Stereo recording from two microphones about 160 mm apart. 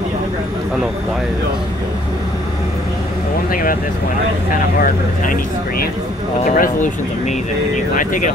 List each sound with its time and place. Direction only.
5.2 s speech: 55° left (ahead or behind)
7.9 s speech: 55° left (ahead or behind)